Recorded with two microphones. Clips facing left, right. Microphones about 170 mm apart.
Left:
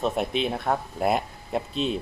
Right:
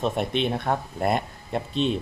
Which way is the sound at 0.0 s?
Centre (ahead or behind).